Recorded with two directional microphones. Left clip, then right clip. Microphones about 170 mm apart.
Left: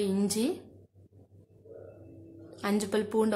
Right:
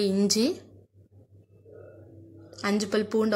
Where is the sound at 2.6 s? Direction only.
15° right (ahead or behind).